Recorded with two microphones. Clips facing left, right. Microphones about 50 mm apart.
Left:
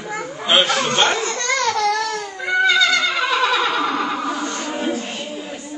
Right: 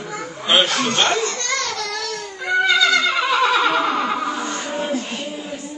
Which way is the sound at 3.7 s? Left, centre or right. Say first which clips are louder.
Right 1 dB; right.